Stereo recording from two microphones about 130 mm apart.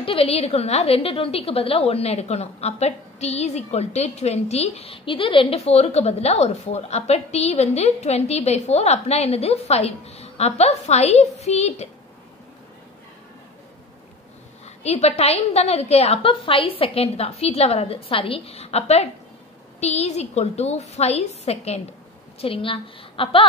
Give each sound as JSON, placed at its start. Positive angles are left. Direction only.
{"t": 0.0, "sound": "a woman's voice", "side_deg": 45}
{"t": 14.8, "sound": "a woman's voice", "side_deg": 55}